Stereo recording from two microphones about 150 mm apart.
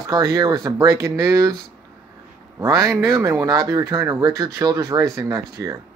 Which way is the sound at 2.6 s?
20° right (ahead or behind).